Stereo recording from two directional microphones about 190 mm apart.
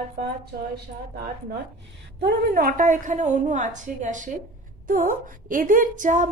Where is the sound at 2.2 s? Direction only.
50° right (ahead or behind).